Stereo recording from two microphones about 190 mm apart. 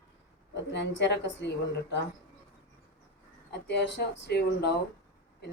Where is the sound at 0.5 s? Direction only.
70° left (ahead or behind).